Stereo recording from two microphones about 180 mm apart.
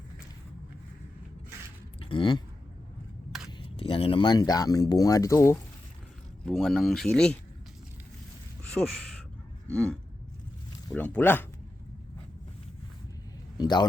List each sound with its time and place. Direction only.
2.0 s speech: 30° left (ahead or behind)
3.8 s speech: 30° left (ahead or behind)
6.4 s speech: centre (ahead or behind)
8.7 s speech: centre (ahead or behind)
13.6 s speech: 25° left (ahead or behind)